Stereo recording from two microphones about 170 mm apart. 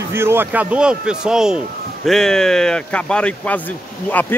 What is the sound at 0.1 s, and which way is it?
A man's voice, 15° right (ahead or behind).